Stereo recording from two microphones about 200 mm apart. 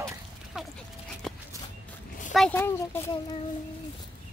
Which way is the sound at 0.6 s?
5° right (ahead or behind).